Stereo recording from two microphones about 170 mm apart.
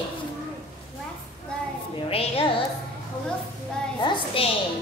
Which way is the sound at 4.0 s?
30° left (ahead or behind).